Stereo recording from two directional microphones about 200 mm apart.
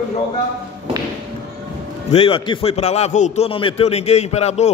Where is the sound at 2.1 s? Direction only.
25° left (ahead or behind).